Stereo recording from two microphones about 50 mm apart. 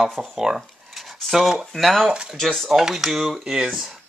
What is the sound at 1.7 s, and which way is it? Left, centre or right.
Cutlery, centre.